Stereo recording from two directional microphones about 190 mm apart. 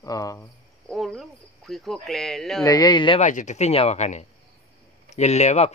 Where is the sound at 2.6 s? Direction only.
20° left (ahead or behind).